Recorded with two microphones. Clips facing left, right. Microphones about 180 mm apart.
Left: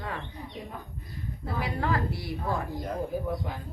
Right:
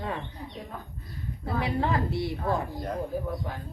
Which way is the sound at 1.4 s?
25° right (ahead or behind).